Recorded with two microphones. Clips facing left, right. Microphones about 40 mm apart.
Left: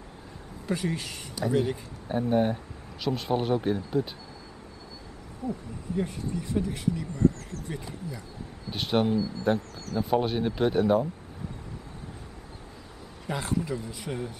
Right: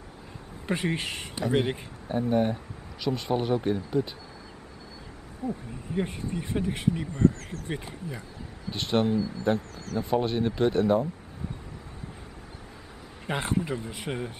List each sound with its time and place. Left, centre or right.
0.7 s speech: right
2.0 s speech: centre
5.5 s speech: right
8.6 s speech: centre
13.3 s speech: right